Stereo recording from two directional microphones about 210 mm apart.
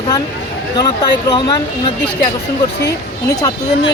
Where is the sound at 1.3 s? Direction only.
20° left (ahead or behind).